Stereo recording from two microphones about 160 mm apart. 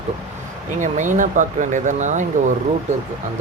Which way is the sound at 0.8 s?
50° right (ahead or behind).